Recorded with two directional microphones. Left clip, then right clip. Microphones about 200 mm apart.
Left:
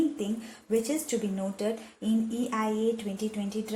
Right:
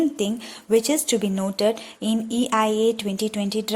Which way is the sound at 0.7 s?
40° right (ahead or behind).